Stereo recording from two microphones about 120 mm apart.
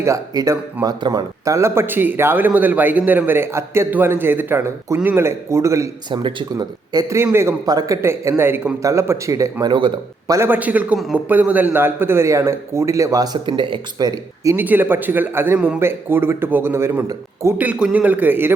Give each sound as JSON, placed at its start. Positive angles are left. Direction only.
{"t": 0.0, "sound": "a man's voice", "side_deg": -25}
{"t": 6.1, "sound": "a man's voice", "side_deg": -35}
{"t": 10.9, "sound": "speech", "side_deg": 0}
{"t": 11.3, "sound": "a man's voice", "side_deg": -15}
{"t": 14.4, "sound": "speech", "side_deg": -15}